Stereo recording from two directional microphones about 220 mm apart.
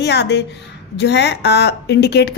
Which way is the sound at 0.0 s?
50° left (ahead or behind).